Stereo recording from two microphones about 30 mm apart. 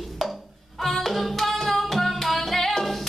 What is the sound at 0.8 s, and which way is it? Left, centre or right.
Music, centre.